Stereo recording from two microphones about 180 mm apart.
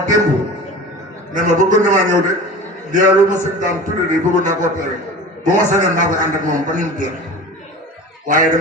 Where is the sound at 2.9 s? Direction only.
45° right (ahead or behind).